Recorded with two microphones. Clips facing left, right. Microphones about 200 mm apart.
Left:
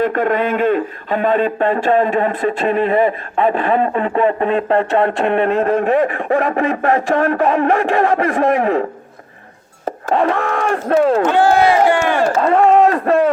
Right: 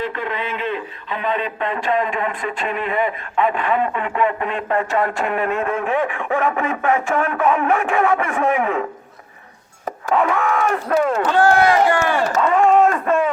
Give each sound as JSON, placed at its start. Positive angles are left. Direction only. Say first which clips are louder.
{"t": 0.0, "sound": "a man's voice", "louder": "left 9 dB", "side_deg": 50}
{"t": 9.8, "sound": "chopping", "louder": "left 3 dB", "side_deg": 35}
{"t": 11.3, "sound": "speech", "louder": "left 2 dB", "side_deg": 20}
{"t": 12.4, "sound": "speech", "louder": "left 2 dB", "side_deg": 35}